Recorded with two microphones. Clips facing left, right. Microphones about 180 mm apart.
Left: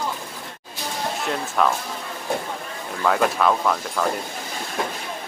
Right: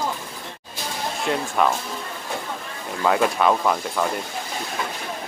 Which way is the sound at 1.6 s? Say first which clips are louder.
Even; 5° right (ahead or behind).